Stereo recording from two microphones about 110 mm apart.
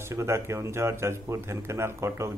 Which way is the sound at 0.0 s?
25° right (ahead or behind).